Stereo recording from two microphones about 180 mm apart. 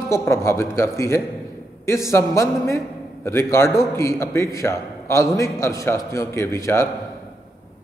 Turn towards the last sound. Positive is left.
turn(degrees=15)  # may be behind; listen again after turning